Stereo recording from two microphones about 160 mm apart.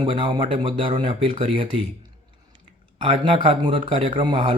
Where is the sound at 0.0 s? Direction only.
30° right (ahead or behind).